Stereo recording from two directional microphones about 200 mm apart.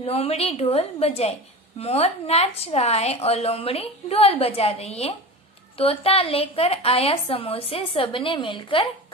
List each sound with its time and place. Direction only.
0.0 s a woman's voice: 30° left (ahead or behind)